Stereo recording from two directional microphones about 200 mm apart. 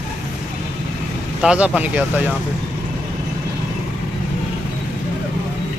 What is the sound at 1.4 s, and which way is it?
Speech, 5° right (ahead or behind).